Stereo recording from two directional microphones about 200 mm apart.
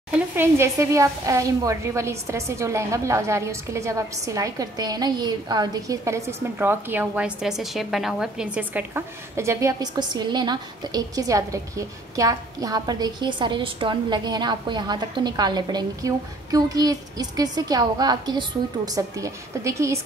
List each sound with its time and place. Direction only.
0.1 s a woman's voice: 10° right (ahead or behind)